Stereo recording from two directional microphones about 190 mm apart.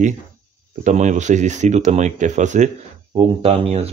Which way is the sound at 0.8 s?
40° right (ahead or behind).